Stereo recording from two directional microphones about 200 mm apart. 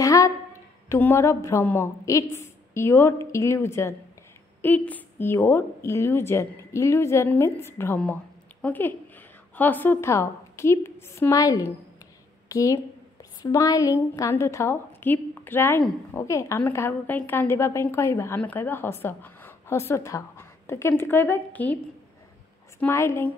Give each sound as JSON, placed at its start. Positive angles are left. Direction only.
{"t": 0.0, "sound": "a woman's voice", "side_deg": 15}
{"t": 22.8, "sound": "a woman's voice", "side_deg": 15}